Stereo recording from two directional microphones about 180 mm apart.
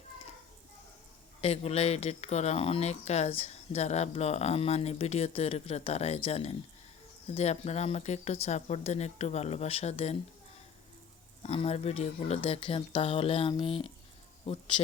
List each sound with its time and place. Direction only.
1.4 s speech: 35° left (ahead or behind)
11.4 s speech: 35° left (ahead or behind)